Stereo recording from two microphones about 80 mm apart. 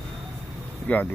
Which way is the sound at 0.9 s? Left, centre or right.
Left.